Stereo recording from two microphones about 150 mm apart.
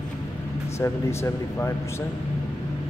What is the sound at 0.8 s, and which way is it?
Speech, 20° left (ahead or behind).